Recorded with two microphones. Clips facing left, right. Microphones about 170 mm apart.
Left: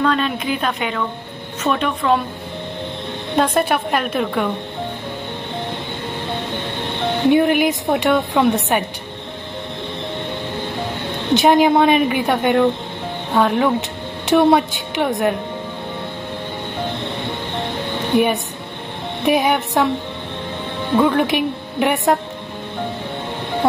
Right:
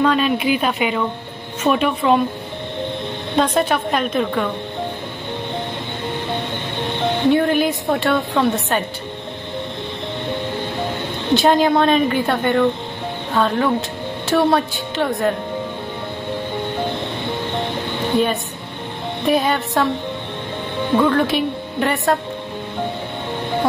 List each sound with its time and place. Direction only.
0.0 s speech: 10° right (ahead or behind)
3.3 s a woman's voice: 10° left (ahead or behind)
7.2 s a woman's voice: 15° left (ahead or behind)
11.3 s a woman's voice: 15° left (ahead or behind)
18.1 s a woman's voice: 15° left (ahead or behind)
21.0 s a woman's voice: 15° left (ahead or behind)